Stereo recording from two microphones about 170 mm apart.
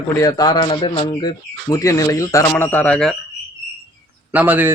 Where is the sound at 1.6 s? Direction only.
20° left (ahead or behind).